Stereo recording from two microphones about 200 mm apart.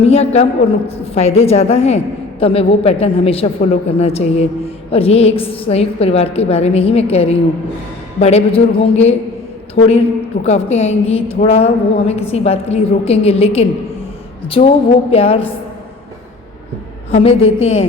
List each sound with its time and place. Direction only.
0.0 s a woman's voice: 30° left (ahead or behind)
17.1 s a woman's voice: 30° left (ahead or behind)